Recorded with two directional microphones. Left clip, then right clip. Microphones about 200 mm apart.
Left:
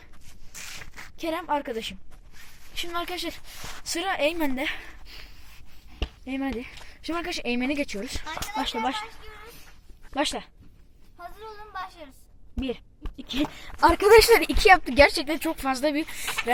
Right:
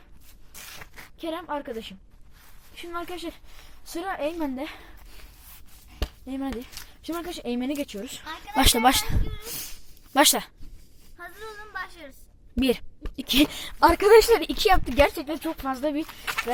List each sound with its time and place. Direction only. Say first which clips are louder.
0.5 s a sound: left 4 dB; 15° right (ahead or behind)
1.2 s a woman's voice: left 4 dB; 20° left (ahead or behind)
2.7 s speech: left 4 dB; centre (ahead or behind)
6.2 s speech: left 2 dB; centre (ahead or behind)
8.5 s speech: right 9 dB; 45° right (ahead or behind)
10.2 s speech: right 8 dB; 45° right (ahead or behind)
11.2 s a sound: right 1 dB; 10° left (ahead or behind)
12.5 s a woman's voice: right 8 dB; 55° right (ahead or behind)
13.9 s a woman's voice: left 1 dB; 10° right (ahead or behind)
16.2 s speech: right 1 dB; 20° right (ahead or behind)